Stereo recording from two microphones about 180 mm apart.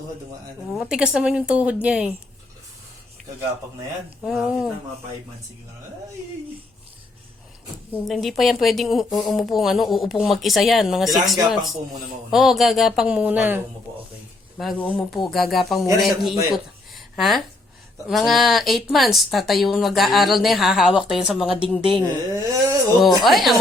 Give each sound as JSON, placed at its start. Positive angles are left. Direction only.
{"t": 0.8, "sound": "speech", "side_deg": -5}
{"t": 4.2, "sound": "speech", "side_deg": 0}
{"t": 7.9, "sound": "speech", "side_deg": 0}
{"t": 14.6, "sound": "speech", "side_deg": 5}
{"t": 16.5, "sound": "a sound", "side_deg": 0}
{"t": 18.1, "sound": "speech", "side_deg": 0}
{"t": 21.8, "sound": "speech", "side_deg": 30}
{"t": 22.3, "sound": "a sound", "side_deg": -20}
{"t": 23.0, "sound": "speech", "side_deg": 0}